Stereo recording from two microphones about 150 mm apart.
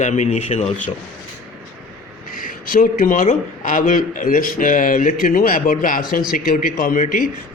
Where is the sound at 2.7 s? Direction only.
70° left (ahead or behind).